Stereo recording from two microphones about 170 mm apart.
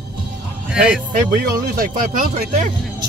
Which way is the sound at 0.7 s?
5° right (ahead or behind).